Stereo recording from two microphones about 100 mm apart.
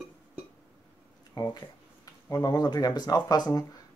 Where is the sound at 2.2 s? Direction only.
40° left (ahead or behind).